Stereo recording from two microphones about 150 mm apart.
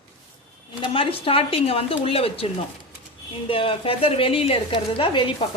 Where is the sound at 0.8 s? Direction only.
35° left (ahead or behind).